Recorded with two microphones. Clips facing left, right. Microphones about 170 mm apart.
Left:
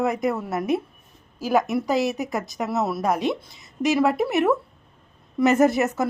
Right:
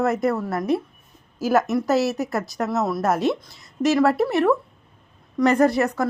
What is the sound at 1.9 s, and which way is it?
Speech, 15° left (ahead or behind).